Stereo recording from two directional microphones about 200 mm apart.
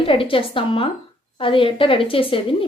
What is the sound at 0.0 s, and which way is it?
Speech, 25° left (ahead or behind).